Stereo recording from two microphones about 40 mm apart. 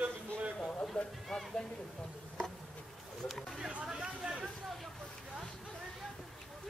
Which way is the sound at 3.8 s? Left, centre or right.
Right.